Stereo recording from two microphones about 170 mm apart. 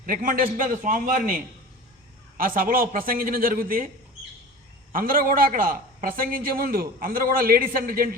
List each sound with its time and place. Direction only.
0.0 s a man's voice: 55° right (ahead or behind)
2.4 s a man's voice: 55° right (ahead or behind)
4.9 s a man's voice: 55° right (ahead or behind)